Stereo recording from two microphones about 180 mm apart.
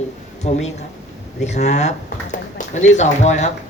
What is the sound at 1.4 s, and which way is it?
Speech, 40° left (ahead or behind).